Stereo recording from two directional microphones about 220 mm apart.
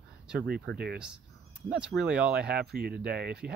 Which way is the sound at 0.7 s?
45° right (ahead or behind).